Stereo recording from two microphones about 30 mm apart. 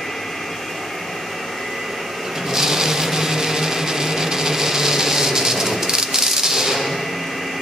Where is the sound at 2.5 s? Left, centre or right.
Centre.